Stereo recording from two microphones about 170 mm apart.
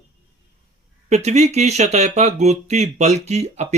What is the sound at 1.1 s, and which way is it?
Speech, 40° right (ahead or behind).